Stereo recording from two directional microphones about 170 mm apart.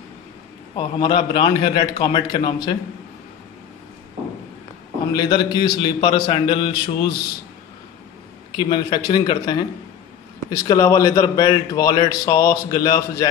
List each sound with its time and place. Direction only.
0.7 s speech: 30° left (ahead or behind)
5.1 s speech: 25° left (ahead or behind)
8.5 s speech: 25° left (ahead or behind)